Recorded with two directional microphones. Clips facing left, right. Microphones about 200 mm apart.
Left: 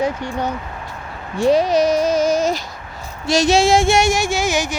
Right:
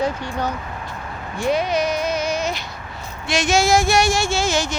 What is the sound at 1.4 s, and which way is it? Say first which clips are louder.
Speech: left 6 dB; 35° left (ahead or behind).